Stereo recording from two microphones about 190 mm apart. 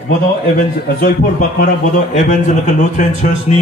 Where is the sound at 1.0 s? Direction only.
50° left (ahead or behind).